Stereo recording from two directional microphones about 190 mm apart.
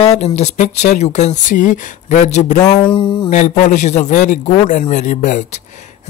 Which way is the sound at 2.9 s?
25° left (ahead or behind).